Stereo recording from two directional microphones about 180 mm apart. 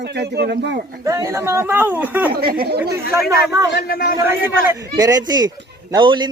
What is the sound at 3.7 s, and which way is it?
Speech, 60° left (ahead or behind).